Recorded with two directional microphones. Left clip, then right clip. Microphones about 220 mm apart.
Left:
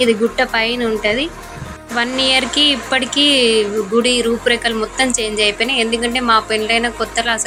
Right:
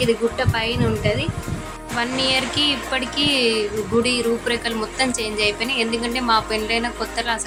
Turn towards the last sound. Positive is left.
turn(degrees=10)  # may be behind; listen again after turning